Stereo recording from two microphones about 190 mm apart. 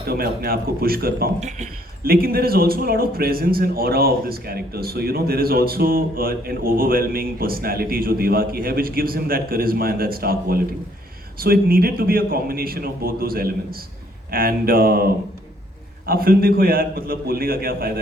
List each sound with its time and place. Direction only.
0.1 s a man's voice: 55° right (ahead or behind)
1.4 s speech: 40° right (ahead or behind)
2.0 s a man's voice: 50° right (ahead or behind)
16.0 s a man's voice: 50° right (ahead or behind)